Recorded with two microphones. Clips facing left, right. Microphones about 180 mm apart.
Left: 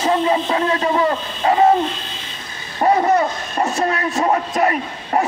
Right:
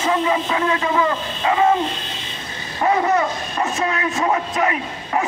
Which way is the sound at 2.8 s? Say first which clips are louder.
Left 3 dB; 35° left (ahead or behind).